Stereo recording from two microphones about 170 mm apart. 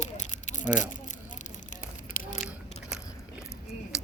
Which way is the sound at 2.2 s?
55° left (ahead or behind).